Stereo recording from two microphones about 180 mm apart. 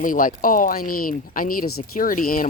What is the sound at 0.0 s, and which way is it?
Speech, 50° left (ahead or behind).